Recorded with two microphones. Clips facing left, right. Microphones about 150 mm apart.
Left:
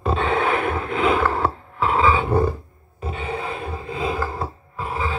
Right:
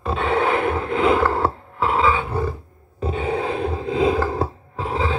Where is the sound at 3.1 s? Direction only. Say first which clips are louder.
Right 5 dB; 60° right (ahead or behind); by 4.3 s 75° right (ahead or behind).